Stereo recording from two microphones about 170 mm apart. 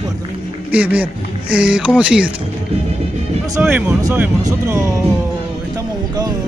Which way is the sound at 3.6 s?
10° right (ahead or behind).